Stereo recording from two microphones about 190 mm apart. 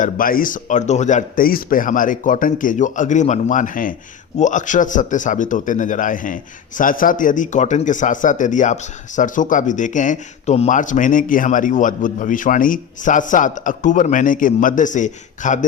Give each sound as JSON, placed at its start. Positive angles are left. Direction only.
{"t": 0.0, "sound": "a man's voice", "side_deg": 50}